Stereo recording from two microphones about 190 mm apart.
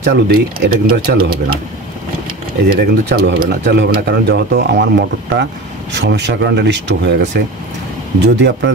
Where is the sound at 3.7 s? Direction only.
60° right (ahead or behind).